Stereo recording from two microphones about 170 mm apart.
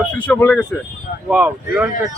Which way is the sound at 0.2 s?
10° left (ahead or behind).